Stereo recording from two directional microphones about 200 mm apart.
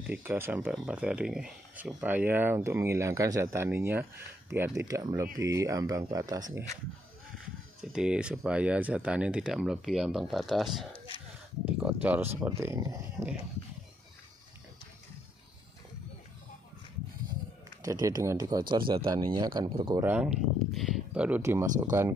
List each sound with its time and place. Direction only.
0.0 s speech: 10° right (ahead or behind)
7.9 s speech: 5° right (ahead or behind)
17.8 s speech: 15° right (ahead or behind)
20.0 s speech: 10° right (ahead or behind)